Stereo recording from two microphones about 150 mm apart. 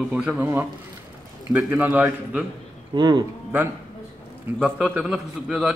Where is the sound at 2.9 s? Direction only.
30° right (ahead or behind).